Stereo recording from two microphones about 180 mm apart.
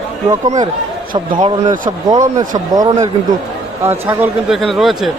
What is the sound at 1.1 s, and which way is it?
Speech, 25° right (ahead or behind).